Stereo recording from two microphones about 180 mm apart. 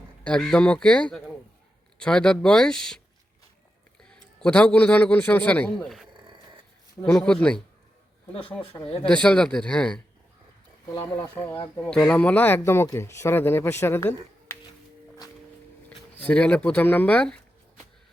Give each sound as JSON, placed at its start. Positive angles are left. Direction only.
{"t": 0.3, "sound": "speech", "side_deg": 5}
{"t": 4.1, "sound": "a man's voice", "side_deg": 5}
{"t": 8.6, "sound": "speech", "side_deg": 30}
{"t": 9.0, "sound": "speech", "side_deg": 5}
{"t": 11.0, "sound": "speech", "side_deg": 15}
{"t": 11.8, "sound": "speech", "side_deg": 5}
{"t": 16.2, "sound": "speech", "side_deg": 10}